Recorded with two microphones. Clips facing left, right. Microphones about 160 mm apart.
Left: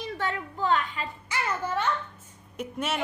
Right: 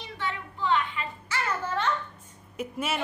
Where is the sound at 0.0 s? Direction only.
45° left (ahead or behind).